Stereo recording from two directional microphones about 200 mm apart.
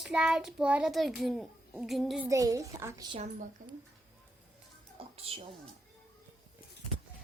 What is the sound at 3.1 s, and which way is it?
Speech, 35° right (ahead or behind).